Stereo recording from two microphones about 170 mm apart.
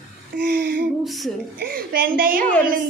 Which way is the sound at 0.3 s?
65° right (ahead or behind).